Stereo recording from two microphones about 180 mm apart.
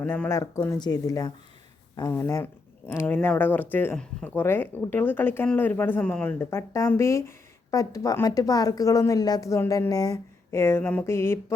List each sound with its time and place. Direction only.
0.0 s speech: 10° left (ahead or behind)